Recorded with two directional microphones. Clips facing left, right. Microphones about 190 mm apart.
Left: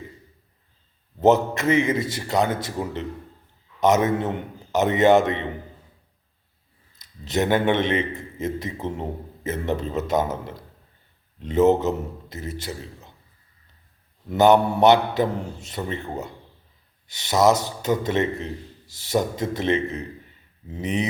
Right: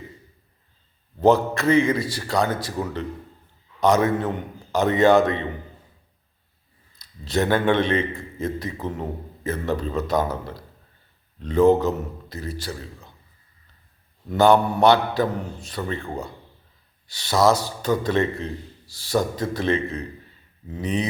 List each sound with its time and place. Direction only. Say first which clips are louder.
1.2 s a man's voice: even; 20° left (ahead or behind)
7.3 s a man's voice: even; 20° left (ahead or behind)
14.3 s a man's voice: even; 20° left (ahead or behind)